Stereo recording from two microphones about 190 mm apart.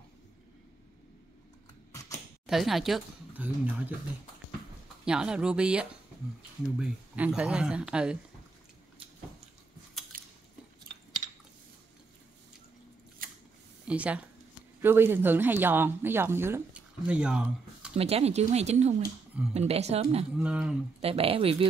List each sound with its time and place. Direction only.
1.9 s a sound: 15° left (ahead or behind)
2.4 s speech: centre (ahead or behind)
5.0 s speech: 5° right (ahead or behind)
10.1 s biting: 45° right (ahead or behind)
13.2 s scissors: 50° right (ahead or behind)
13.8 s speech: 5° right (ahead or behind)
17.9 s speech: 30° right (ahead or behind)
20.3 s speech: 5° right (ahead or behind)
21.0 s speech: 30° right (ahead or behind)